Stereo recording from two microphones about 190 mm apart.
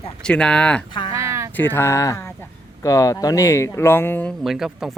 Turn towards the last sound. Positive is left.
turn(degrees=0)  # may be behind; listen again after turning